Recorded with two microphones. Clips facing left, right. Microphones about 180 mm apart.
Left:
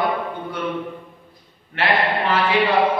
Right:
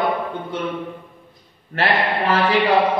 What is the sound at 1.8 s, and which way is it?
Speech, 40° right (ahead or behind).